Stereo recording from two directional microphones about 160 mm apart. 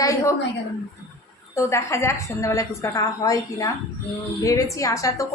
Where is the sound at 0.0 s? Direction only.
20° left (ahead or behind).